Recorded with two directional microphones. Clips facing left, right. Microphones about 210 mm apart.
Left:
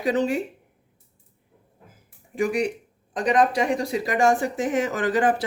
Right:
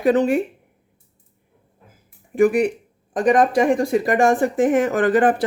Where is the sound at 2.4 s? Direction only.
55° right (ahead or behind).